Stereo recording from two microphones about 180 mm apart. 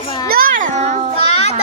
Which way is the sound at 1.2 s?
35° left (ahead or behind).